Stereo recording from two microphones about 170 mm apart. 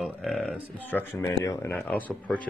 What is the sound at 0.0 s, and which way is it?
Speech, centre (ahead or behind).